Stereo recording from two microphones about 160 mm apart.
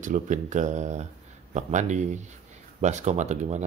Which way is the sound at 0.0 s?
50° right (ahead or behind).